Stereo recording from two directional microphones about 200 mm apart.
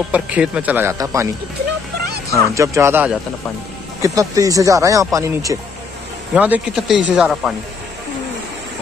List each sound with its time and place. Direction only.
0.1 s speech: 5° right (ahead or behind)
2.5 s speech: 15° right (ahead or behind)